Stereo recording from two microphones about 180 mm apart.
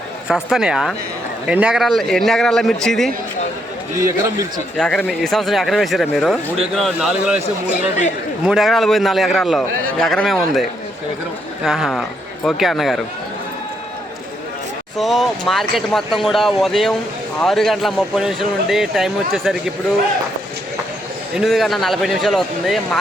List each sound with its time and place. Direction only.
0.3 s a man's voice: 5° right (ahead or behind)
4.0 s speech: 15° right (ahead or behind)
4.8 s a man's voice: 5° left (ahead or behind)
7.8 s speech: 40° left (ahead or behind)
8.4 s a man's voice: centre (ahead or behind)
14.9 s a man's voice: centre (ahead or behind)
21.3 s a man's voice: centre (ahead or behind)